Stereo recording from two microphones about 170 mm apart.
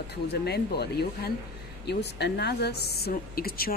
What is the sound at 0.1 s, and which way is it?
A woman's voice, 75° left (ahead or behind).